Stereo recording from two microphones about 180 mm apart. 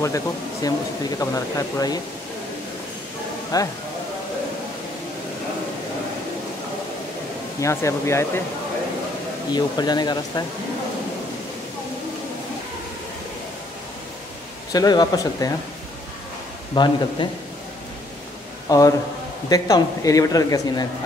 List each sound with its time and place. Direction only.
0.0 s speech: 20° left (ahead or behind)
3.5 s speech: 20° left (ahead or behind)
7.6 s speech: 15° left (ahead or behind)
9.5 s speech: 25° left (ahead or behind)
14.7 s speech: 20° left (ahead or behind)
16.7 s speech: 25° left (ahead or behind)
18.7 s speech: 20° left (ahead or behind)